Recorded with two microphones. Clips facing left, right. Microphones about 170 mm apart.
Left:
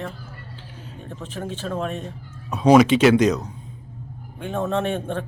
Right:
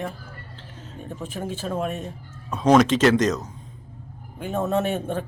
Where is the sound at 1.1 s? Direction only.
10° right (ahead or behind).